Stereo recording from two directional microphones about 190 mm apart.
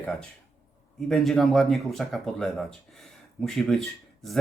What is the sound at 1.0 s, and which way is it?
Speech, centre (ahead or behind).